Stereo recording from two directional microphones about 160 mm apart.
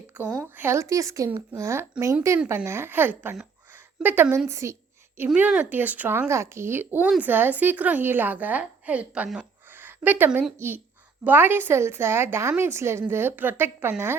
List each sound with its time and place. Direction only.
0.4 s a woman's voice: 15° right (ahead or behind)